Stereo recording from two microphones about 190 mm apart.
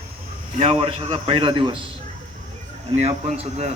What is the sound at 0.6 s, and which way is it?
A man's voice, 30° right (ahead or behind).